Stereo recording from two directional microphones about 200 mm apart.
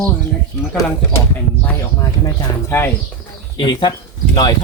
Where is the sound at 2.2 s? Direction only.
15° left (ahead or behind).